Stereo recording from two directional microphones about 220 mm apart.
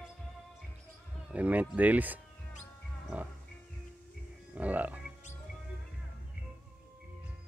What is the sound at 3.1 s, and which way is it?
Music, 5° right (ahead or behind).